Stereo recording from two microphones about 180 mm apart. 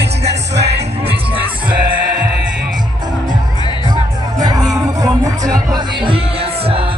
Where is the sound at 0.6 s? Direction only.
70° right (ahead or behind).